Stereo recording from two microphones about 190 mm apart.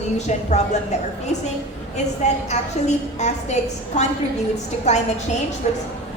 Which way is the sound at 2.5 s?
35° left (ahead or behind).